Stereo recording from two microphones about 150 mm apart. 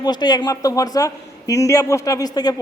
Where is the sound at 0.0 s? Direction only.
30° left (ahead or behind).